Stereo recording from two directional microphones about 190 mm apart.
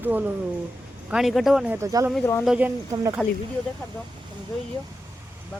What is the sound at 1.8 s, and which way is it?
Speech, 15° right (ahead or behind).